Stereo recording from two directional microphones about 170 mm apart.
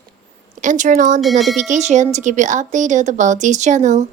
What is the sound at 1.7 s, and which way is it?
A woman's voice, 45° right (ahead or behind).